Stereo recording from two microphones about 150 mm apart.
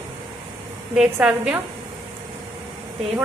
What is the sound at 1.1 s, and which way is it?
Speech, 10° right (ahead or behind).